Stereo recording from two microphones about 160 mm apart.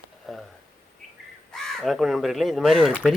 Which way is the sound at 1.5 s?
Centre (ahead or behind).